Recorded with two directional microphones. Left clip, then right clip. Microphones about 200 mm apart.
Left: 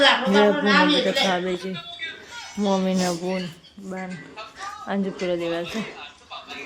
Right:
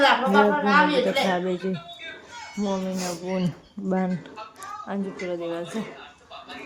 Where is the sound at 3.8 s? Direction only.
35° right (ahead or behind).